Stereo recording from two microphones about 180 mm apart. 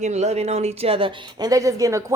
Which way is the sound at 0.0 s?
40° right (ahead or behind).